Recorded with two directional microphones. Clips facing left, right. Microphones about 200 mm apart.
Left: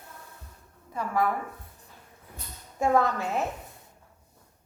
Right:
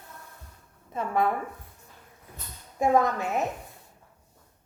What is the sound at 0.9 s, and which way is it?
Speech, 25° right (ahead or behind).